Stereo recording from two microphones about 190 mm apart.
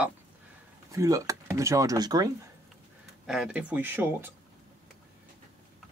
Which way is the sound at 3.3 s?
5° right (ahead or behind).